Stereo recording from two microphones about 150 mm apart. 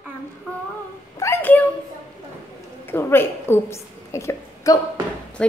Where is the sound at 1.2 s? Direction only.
15° left (ahead or behind).